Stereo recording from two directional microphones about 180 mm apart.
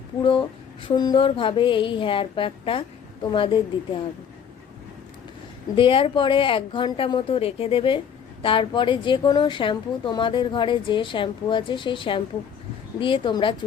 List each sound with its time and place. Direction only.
0.2 s a woman's voice: 25° left (ahead or behind)
5.7 s a woman's voice: 30° left (ahead or behind)